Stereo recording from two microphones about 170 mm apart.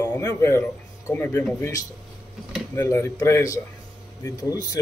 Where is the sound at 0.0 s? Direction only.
15° left (ahead or behind).